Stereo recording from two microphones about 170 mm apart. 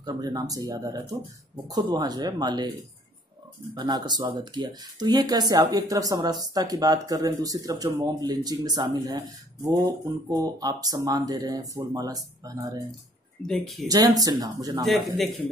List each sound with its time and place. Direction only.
0.0 s speech: 20° right (ahead or behind)
3.7 s speech: 25° right (ahead or behind)
10.3 s speech: 20° right (ahead or behind)
13.5 s speech: centre (ahead or behind)
13.8 s speech: 20° right (ahead or behind)
14.8 s speech: centre (ahead or behind)